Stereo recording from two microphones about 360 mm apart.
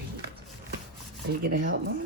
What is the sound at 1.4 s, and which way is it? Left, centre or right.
Speech, right.